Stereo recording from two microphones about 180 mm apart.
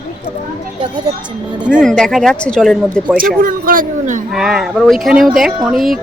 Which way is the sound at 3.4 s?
50° right (ahead or behind).